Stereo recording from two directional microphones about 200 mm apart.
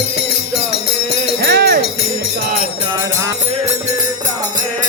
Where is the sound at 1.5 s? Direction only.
50° right (ahead or behind).